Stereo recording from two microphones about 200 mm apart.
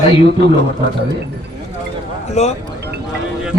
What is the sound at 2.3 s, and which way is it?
Speech, 35° left (ahead or behind).